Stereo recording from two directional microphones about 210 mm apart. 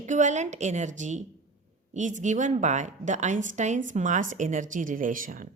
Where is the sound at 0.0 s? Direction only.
35° right (ahead or behind).